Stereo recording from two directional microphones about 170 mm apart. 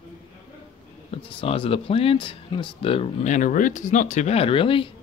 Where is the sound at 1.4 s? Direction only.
35° left (ahead or behind).